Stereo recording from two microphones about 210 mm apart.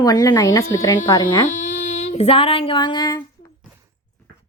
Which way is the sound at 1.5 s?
35° left (ahead or behind).